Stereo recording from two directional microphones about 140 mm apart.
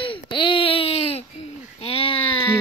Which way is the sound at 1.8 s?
40° left (ahead or behind).